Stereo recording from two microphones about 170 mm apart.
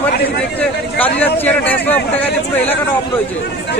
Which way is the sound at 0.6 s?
10° left (ahead or behind).